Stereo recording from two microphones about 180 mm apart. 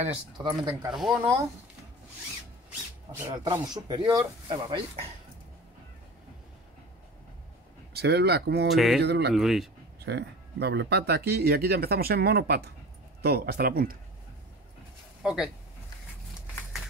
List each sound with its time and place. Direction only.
0.0 s speech: 25° right (ahead or behind)
0.9 s speech: centre (ahead or behind)
3.4 s speech: 20° right (ahead or behind)
7.9 s speech: 65° right (ahead or behind)
8.6 s speech: centre (ahead or behind)
9.0 s speech: 65° right (ahead or behind)
9.3 s speech: centre (ahead or behind)
9.9 s speech: 65° right (ahead or behind)
15.2 s speech: 5° right (ahead or behind)